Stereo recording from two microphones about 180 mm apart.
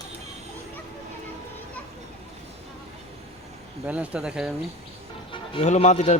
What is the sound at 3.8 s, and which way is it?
Speech, 5° right (ahead or behind).